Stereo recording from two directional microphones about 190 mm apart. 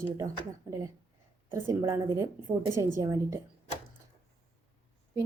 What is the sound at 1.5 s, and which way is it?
A woman's voice, 15° right (ahead or behind).